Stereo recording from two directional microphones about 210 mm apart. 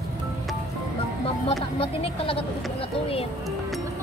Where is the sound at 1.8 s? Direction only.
25° left (ahead or behind).